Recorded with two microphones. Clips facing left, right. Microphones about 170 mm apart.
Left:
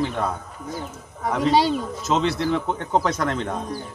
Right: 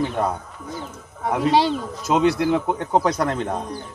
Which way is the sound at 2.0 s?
15° right (ahead or behind).